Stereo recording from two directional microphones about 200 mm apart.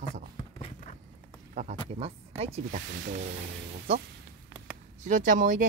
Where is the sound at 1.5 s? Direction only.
40° right (ahead or behind).